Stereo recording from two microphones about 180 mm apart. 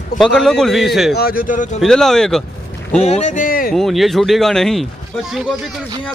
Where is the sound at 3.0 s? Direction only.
40° left (ahead or behind).